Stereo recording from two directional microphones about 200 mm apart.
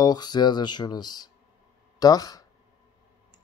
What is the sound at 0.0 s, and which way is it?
Speech, 20° left (ahead or behind).